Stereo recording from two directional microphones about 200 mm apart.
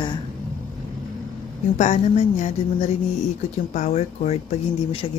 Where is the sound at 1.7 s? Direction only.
35° left (ahead or behind).